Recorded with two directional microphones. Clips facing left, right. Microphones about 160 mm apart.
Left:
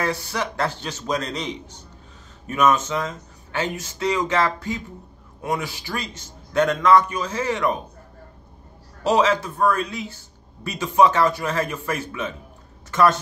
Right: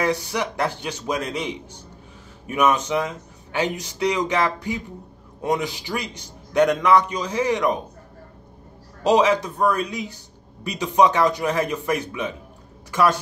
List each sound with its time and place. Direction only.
0.0 s speech: 15° right (ahead or behind)
9.0 s speech: 15° right (ahead or behind)